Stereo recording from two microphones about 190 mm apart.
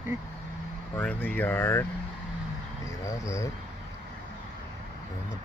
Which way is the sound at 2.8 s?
15° left (ahead or behind).